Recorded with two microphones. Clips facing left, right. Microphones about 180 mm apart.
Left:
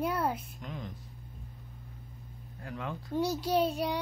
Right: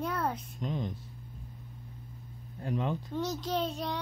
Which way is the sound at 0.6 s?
25° right (ahead or behind).